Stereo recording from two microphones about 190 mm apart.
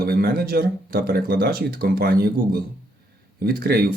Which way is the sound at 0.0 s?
50° right (ahead or behind).